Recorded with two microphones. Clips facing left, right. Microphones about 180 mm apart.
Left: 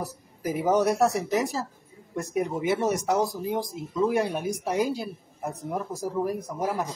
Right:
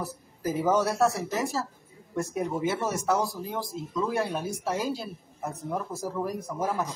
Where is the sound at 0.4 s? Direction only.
15° left (ahead or behind).